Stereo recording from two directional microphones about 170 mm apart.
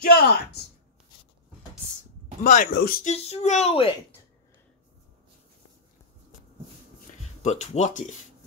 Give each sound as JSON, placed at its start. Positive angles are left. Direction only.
{"t": 0.0, "sound": "a woman's voice", "side_deg": 70}
{"t": 2.4, "sound": "speech", "side_deg": 45}
{"t": 2.7, "sound": "speech", "side_deg": 60}
{"t": 3.1, "sound": "speech", "side_deg": 40}
{"t": 7.4, "sound": "speech", "side_deg": 45}